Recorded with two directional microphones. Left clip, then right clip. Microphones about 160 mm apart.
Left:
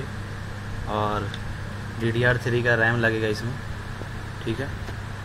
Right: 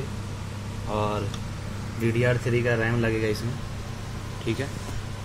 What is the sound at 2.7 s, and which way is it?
Speech, 5° left (ahead or behind).